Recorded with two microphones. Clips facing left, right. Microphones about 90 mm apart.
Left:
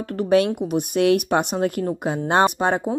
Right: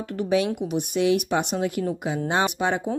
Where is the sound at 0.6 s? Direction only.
50° left (ahead or behind).